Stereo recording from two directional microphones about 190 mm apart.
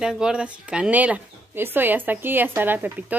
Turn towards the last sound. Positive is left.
turn(degrees=-10)  # may be behind; listen again after turning